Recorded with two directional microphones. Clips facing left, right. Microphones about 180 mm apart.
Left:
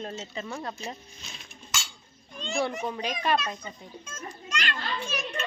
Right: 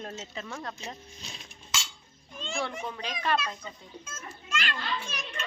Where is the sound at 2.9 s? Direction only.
15° left (ahead or behind).